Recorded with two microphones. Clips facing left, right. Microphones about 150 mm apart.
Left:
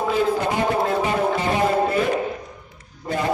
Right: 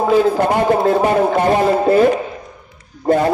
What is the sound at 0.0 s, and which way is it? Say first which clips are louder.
Speech: right 7 dB; 55° right (ahead or behind).